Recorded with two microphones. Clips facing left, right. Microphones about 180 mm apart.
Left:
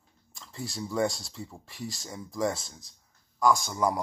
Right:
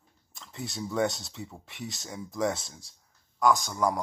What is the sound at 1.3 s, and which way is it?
Speech, 5° right (ahead or behind).